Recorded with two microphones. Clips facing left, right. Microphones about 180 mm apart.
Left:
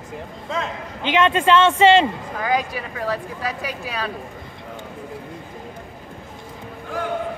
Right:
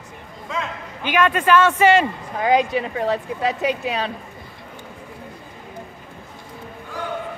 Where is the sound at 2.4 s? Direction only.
20° right (ahead or behind).